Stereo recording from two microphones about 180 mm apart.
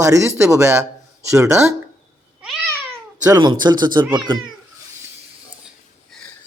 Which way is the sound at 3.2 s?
20° right (ahead or behind).